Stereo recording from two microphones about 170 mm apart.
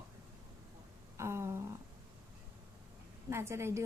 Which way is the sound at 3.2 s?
15° right (ahead or behind).